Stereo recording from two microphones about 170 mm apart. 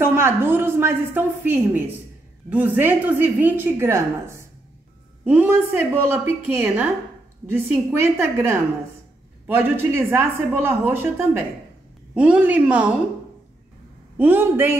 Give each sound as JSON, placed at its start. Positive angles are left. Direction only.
{"t": 0.0, "sound": "a woman's voice", "side_deg": -15}
{"t": 14.1, "sound": "a woman's voice", "side_deg": -10}